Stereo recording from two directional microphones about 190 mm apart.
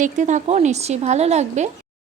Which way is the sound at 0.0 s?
40° right (ahead or behind).